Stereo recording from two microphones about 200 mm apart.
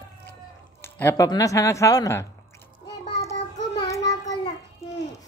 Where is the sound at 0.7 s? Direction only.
10° left (ahead or behind).